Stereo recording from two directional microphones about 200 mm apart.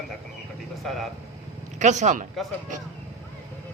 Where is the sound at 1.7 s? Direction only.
35° right (ahead or behind).